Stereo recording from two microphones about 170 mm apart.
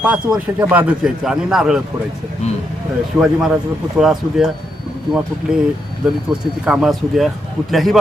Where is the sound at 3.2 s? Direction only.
5° right (ahead or behind).